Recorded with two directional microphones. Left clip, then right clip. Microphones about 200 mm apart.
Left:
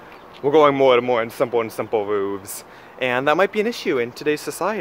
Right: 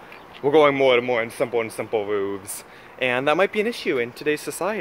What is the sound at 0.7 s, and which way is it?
Speech, 10° left (ahead or behind).